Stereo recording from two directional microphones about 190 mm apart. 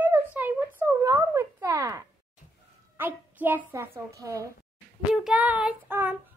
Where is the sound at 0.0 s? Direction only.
10° right (ahead or behind).